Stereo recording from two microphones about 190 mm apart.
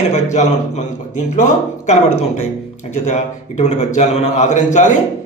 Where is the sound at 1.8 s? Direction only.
35° left (ahead or behind).